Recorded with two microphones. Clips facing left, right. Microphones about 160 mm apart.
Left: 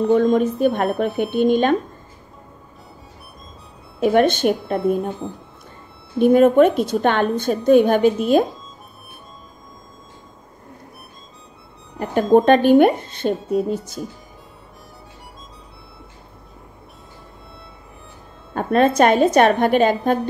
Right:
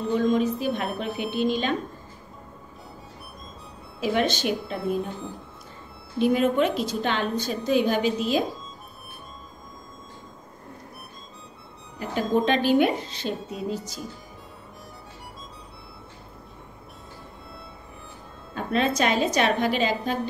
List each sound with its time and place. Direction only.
0.1 s a woman's voice: 50° left (ahead or behind)
4.0 s a woman's voice: 55° left (ahead or behind)
12.0 s a woman's voice: 50° left (ahead or behind)
18.5 s a woman's voice: 50° left (ahead or behind)